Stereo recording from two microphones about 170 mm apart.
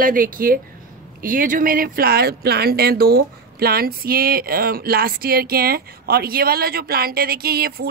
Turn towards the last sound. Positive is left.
turn(degrees=-65)  # may be behind; listen again after turning